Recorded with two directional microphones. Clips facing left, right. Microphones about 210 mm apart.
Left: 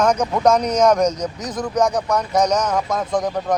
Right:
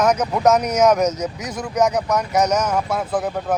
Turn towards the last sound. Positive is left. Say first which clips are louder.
# left 1 dB
turn(degrees=-5)  # may be behind; listen again after turning